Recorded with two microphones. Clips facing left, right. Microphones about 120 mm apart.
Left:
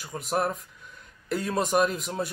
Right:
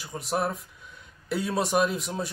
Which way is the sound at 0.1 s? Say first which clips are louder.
Left 1 dB; centre (ahead or behind).